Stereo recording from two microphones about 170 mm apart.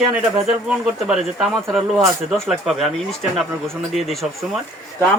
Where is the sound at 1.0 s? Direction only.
5° right (ahead or behind).